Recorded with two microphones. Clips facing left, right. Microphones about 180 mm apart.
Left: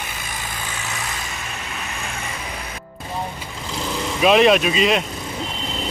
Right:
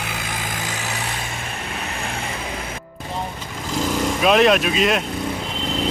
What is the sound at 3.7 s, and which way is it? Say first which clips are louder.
Vehicle: right 5 dB; 45° right (ahead or behind).